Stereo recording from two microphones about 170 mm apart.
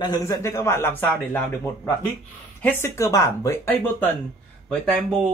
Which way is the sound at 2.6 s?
10° left (ahead or behind).